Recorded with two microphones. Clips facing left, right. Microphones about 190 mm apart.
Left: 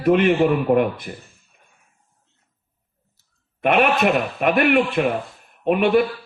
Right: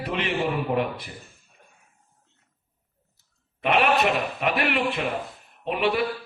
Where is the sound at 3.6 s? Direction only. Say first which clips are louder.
Left 4 dB; 55° left (ahead or behind).